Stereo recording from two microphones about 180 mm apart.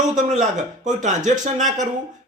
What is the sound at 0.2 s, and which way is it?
A man's voice, 45° right (ahead or behind).